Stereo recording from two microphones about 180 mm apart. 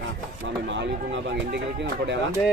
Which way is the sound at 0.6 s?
85° right.